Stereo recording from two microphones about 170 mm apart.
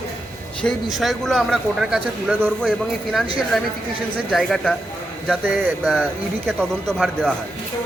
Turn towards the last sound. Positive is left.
turn(degrees=0)  # may be behind; listen again after turning